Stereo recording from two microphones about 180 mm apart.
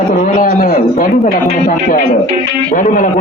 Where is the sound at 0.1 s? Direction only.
40° left (ahead or behind).